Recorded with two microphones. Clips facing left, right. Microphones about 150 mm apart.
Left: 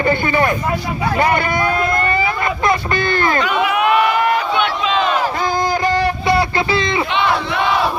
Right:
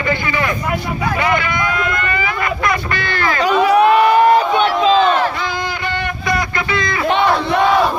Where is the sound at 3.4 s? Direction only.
35° right (ahead or behind).